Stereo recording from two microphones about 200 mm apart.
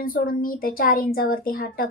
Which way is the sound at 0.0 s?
45° left (ahead or behind).